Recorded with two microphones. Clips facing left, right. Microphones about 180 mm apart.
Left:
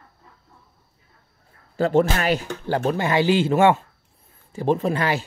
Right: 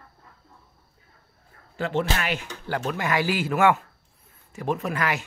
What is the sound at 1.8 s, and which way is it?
Speech, 40° left (ahead or behind).